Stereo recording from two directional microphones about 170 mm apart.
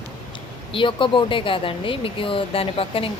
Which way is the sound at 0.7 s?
30° left (ahead or behind).